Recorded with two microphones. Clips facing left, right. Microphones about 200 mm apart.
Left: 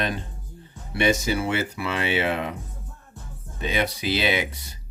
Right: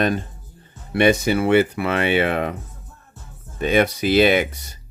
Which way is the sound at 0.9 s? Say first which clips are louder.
Right 6 dB; 60° right (ahead or behind).